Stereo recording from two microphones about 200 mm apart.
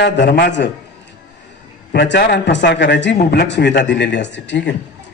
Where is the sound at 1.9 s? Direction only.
60° left (ahead or behind).